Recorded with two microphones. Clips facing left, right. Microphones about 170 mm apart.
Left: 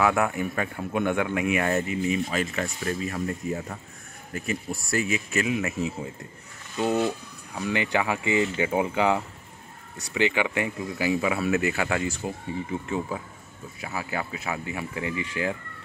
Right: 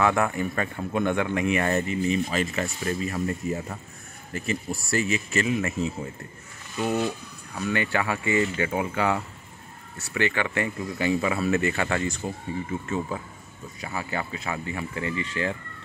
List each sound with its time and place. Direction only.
0.0 s speech: 5° left (ahead or behind)
6.8 s speech: 20° left (ahead or behind)